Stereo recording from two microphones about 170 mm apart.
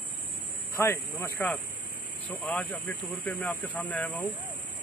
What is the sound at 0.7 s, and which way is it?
Speech, 15° left (ahead or behind).